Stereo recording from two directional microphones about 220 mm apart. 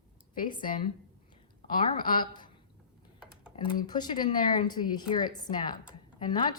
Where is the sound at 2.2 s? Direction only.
20° left (ahead or behind).